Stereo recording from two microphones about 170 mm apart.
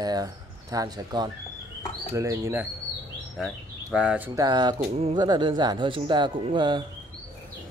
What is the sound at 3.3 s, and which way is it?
Speech, 5° right (ahead or behind).